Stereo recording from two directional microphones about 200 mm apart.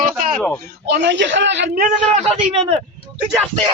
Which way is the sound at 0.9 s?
60° right (ahead or behind).